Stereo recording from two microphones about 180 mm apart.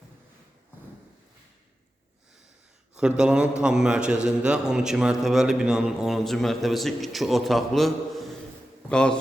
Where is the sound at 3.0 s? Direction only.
5° right (ahead or behind).